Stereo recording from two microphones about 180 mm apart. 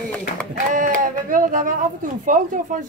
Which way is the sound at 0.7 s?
45° right (ahead or behind).